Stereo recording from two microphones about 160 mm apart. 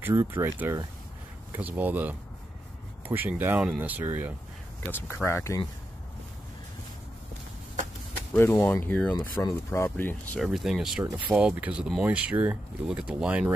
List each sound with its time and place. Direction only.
0.0 s speech: 15° right (ahead or behind)
4.9 s speech: 15° left (ahead or behind)
8.4 s speech: 15° left (ahead or behind)
10.4 s speech: centre (ahead or behind)